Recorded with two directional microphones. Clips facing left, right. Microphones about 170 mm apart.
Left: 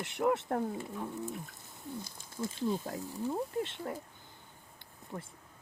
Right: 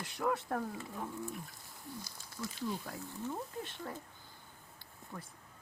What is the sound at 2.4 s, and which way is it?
Speech, 25° left (ahead or behind).